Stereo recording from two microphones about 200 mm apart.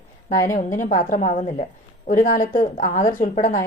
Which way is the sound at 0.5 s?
40° left (ahead or behind).